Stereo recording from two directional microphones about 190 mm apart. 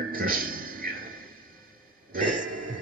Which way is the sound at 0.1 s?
50° right (ahead or behind).